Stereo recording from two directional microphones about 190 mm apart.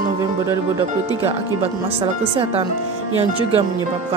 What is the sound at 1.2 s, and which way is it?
Speech, 30° right (ahead or behind).